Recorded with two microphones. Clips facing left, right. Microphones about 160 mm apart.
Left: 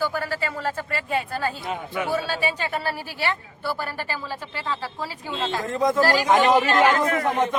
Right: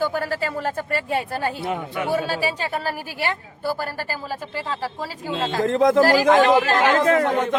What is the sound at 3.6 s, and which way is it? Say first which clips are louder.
Speech: right 3 dB; 40° right (ahead or behind).